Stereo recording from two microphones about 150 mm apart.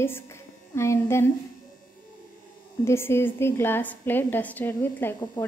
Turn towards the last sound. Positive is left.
turn(degrees=15)  # may be behind; listen again after turning